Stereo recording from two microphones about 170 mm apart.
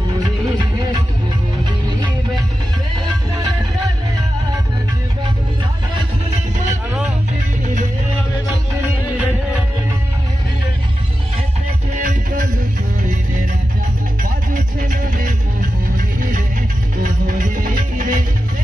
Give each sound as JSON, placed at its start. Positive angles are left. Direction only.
{"t": 8.8, "sound": "music", "side_deg": -10}
{"t": 12.0, "sound": "music", "side_deg": -55}
{"t": 14.5, "sound": "music", "side_deg": -55}